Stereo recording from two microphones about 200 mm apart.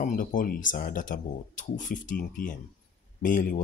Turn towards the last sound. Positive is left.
turn(degrees=40)  # may be behind; listen again after turning